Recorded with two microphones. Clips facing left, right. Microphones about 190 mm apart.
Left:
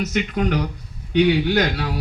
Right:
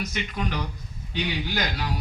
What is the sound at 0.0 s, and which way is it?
Speech, 70° left (ahead or behind).